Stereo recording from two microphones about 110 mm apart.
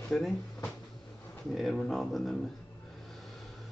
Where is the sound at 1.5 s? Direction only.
5° left (ahead or behind).